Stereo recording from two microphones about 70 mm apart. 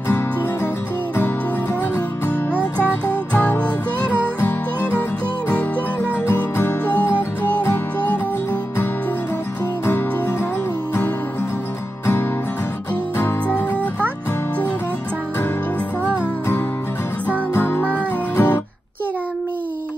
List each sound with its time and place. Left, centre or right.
6.3 s music: left
17.6 s music: left